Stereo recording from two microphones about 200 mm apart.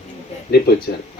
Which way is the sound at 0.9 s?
50° left (ahead or behind).